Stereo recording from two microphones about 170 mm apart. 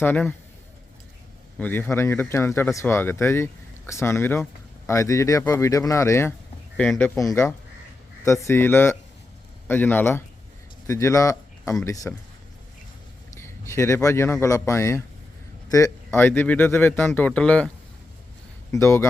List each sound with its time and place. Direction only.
0.0 s speech: 10° left (ahead or behind)
1.5 s speech: 10° left (ahead or behind)
7.2 s speech: 15° left (ahead or behind)
13.4 s speech: 15° left (ahead or behind)
18.7 s speech: 15° left (ahead or behind)